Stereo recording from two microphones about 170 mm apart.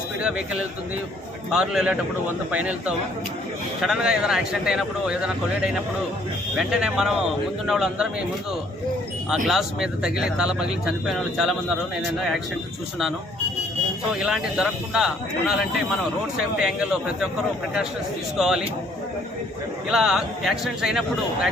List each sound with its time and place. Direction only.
0.2 s speech: 5° right (ahead or behind)
1.5 s speech: 5° right (ahead or behind)
9.3 s speech: 5° right (ahead or behind)
14.3 s speech: 5° right (ahead or behind)
16.8 s speech: 5° right (ahead or behind)
18.3 s speech: 5° right (ahead or behind)
19.9 s speech: centre (ahead or behind)